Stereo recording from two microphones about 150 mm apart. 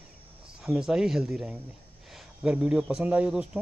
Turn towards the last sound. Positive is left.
turn(degrees=-10)  # may be behind; listen again after turning